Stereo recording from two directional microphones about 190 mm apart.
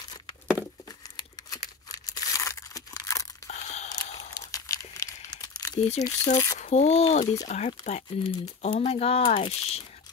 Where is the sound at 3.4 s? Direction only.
35° left (ahead or behind).